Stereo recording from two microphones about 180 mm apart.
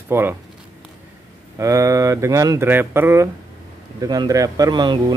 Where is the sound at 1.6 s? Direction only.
15° right (ahead or behind).